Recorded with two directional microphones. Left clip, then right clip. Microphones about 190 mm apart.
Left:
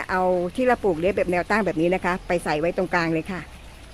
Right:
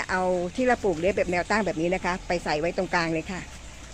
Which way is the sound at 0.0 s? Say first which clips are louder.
Left 3 dB; 30° left (ahead or behind).